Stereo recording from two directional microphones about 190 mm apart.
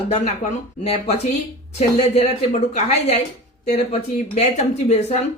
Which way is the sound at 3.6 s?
35° left (ahead or behind).